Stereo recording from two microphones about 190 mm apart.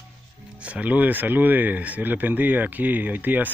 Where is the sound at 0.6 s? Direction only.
5° right (ahead or behind).